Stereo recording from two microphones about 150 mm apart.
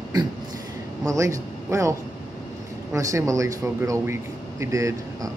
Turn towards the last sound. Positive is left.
turn(degrees=-20)  # may be behind; listen again after turning